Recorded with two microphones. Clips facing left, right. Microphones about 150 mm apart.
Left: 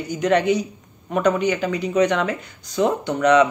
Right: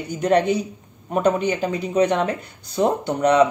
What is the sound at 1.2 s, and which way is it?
Speech, 30° right (ahead or behind).